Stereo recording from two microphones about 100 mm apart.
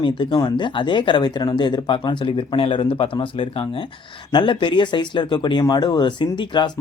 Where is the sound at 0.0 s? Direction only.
55° left (ahead or behind).